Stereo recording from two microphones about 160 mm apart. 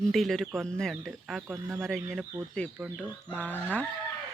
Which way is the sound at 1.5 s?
20° right (ahead or behind).